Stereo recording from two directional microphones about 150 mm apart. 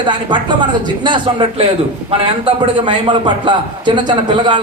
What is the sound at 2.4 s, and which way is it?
A man's voice, 30° right (ahead or behind).